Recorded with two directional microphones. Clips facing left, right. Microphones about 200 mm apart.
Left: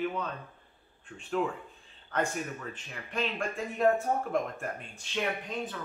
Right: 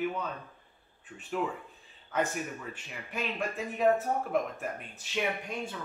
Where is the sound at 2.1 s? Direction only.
10° right (ahead or behind).